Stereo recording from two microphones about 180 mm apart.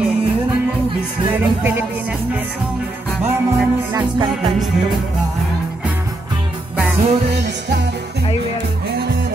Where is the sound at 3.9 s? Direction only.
25° right (ahead or behind).